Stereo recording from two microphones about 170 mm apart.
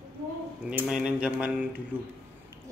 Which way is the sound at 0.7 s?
5° right (ahead or behind).